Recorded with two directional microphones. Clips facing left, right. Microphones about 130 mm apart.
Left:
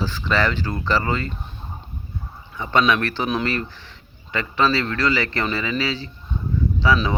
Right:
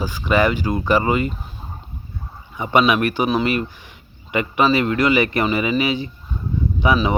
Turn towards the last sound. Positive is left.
turn(degrees=-15)  # may be behind; listen again after turning